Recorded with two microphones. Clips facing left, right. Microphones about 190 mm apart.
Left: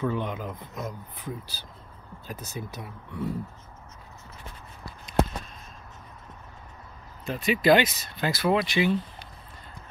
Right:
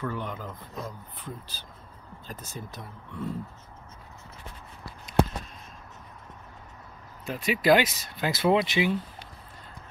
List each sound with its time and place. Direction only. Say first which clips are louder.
0.0 s speech: left 4 dB; 20° left (ahead or behind)
7.2 s speech: left 1 dB; 10° right (ahead or behind)
8.3 s speech: right 1 dB; 20° right (ahead or behind)